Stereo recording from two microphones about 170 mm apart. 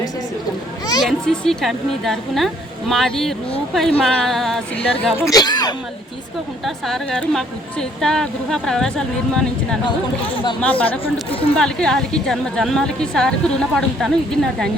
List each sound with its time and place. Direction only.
1.0 s a woman's voice: centre (ahead or behind)
5.1 s speech: 20° left (ahead or behind)
6.7 s a woman's voice: centre (ahead or behind)
10.6 s speech: 10° left (ahead or behind)
11.3 s speech: 35° left (ahead or behind)
11.5 s a woman's voice: 5° left (ahead or behind)